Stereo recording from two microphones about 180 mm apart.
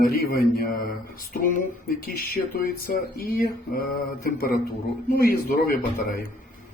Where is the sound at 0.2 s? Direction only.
60° left (ahead or behind).